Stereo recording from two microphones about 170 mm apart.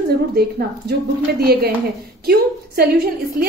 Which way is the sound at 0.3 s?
65° right (ahead or behind).